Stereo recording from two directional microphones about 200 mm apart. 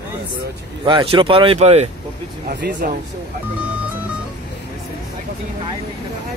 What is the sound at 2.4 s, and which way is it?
Speech, 45° right (ahead or behind).